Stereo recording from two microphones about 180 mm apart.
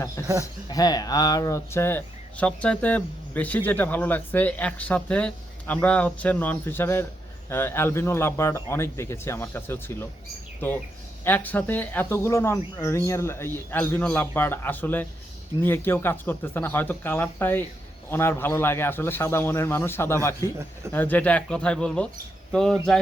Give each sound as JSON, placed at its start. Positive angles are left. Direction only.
{"t": 0.4, "sound": "speech", "side_deg": 20}
{"t": 11.3, "sound": "speech", "side_deg": 10}